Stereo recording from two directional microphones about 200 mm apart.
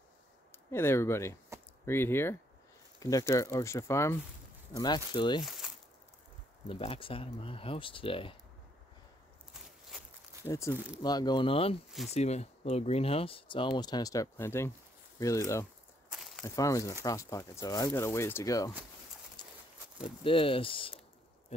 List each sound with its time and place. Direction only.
0.5 s speech: 10° left (ahead or behind)
1.5 s a sound: 15° right (ahead or behind)
1.9 s speech: 10° left (ahead or behind)
5.4 s speech: centre (ahead or behind)
6.7 s speech: 30° left (ahead or behind)
9.5 s walk: centre (ahead or behind)
10.4 s speech: 15° left (ahead or behind)
16.1 s walk: centre (ahead or behind)
16.4 s speech: 15° left (ahead or behind)
19.4 s a sound: 20° left (ahead or behind)
20.2 s speech: 25° left (ahead or behind)